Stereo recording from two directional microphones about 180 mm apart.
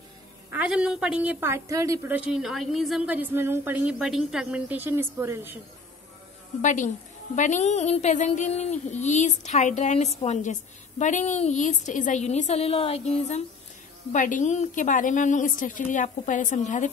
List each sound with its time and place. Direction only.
0.5 s a woman's voice: 5° right (ahead or behind)
6.6 s a woman's voice: 45° left (ahead or behind)